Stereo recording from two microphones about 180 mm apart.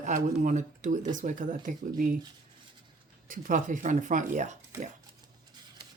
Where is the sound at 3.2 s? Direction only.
50° right (ahead or behind).